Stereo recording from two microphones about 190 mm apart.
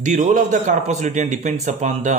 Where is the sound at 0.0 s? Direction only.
40° right (ahead or behind).